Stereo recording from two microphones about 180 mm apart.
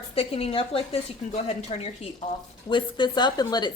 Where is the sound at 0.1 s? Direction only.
30° left (ahead or behind).